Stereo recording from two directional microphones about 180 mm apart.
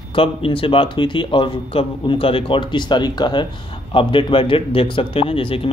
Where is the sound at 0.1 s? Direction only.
30° left (ahead or behind).